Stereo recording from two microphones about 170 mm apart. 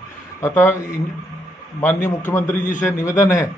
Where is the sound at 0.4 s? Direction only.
15° left (ahead or behind).